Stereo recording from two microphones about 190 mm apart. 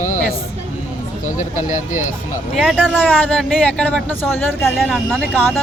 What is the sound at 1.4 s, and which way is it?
Speech, 40° left (ahead or behind).